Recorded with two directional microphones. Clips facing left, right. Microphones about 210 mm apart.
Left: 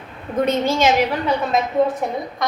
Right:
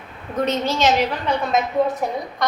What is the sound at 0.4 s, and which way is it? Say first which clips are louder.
Speech: left 2 dB; 10° left (ahead or behind).